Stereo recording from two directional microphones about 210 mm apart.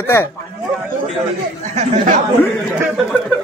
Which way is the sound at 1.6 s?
35° right (ahead or behind).